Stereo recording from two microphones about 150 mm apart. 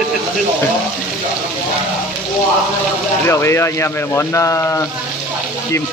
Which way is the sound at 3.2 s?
15° left (ahead or behind).